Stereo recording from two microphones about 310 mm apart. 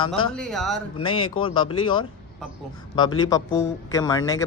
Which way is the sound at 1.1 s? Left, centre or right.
Left.